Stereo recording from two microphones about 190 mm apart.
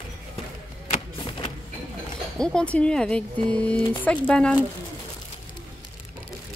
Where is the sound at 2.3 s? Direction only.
5° left (ahead or behind).